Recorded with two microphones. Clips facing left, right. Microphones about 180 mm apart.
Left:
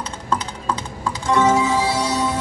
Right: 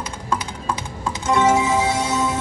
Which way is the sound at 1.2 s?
20° right (ahead or behind).